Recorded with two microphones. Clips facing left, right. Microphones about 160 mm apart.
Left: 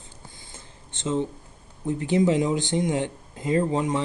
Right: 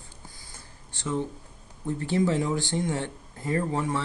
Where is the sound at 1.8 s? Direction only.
20° left (ahead or behind).